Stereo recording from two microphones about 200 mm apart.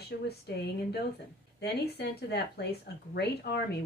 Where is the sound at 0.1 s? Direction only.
50° left (ahead or behind).